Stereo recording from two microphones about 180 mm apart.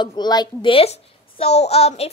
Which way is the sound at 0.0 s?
25° left (ahead or behind).